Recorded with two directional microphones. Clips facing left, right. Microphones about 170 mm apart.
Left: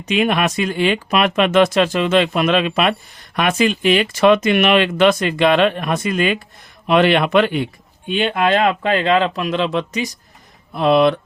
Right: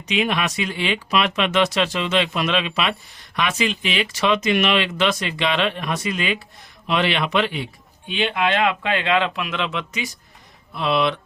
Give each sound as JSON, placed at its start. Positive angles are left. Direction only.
{"t": 0.0, "sound": "speech", "side_deg": 50}